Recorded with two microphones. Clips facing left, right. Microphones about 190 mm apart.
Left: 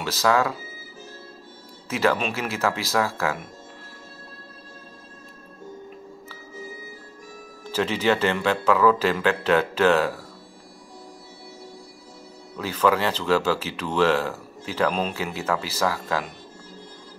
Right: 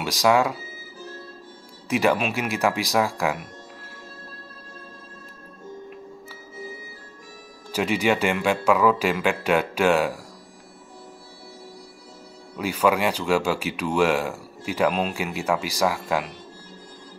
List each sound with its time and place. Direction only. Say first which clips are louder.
0.0 s speech: right 2 dB; 15° right (ahead or behind)
1.9 s speech: right 2 dB; 15° right (ahead or behind)
7.7 s speech: even; 10° right (ahead or behind)
12.5 s speech: even; 10° right (ahead or behind)